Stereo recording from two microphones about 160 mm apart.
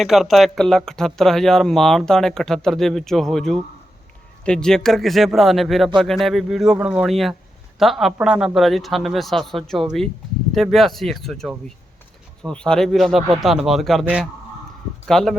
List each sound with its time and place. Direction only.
0.0 s speech: centre (ahead or behind)